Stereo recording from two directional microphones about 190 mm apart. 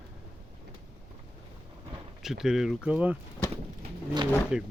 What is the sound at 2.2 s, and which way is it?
Speech, 5° right (ahead or behind).